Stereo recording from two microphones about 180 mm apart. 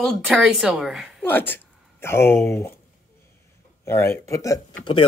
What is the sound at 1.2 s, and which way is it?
Speech, 10° left (ahead or behind).